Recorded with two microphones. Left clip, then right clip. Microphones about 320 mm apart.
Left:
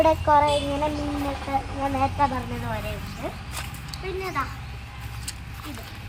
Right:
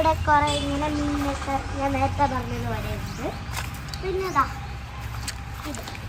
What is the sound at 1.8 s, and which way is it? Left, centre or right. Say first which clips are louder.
Speech: even; left.